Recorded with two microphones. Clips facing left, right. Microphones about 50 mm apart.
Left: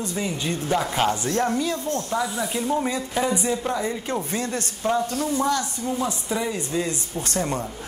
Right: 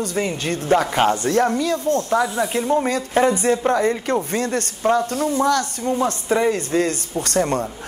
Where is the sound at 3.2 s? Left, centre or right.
Right.